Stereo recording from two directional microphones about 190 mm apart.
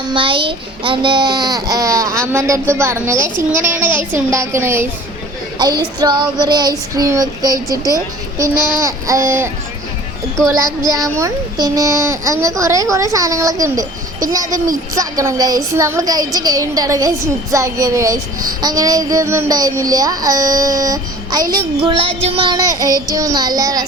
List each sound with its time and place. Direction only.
0.1 s a child's voice: 25° right (ahead or behind)
5.5 s child singing: 20° right (ahead or behind)
6.0 s speech: 25° right (ahead or behind)
8.8 s a child's voice: 15° right (ahead or behind)
10.8 s a child's voice: 15° right (ahead or behind)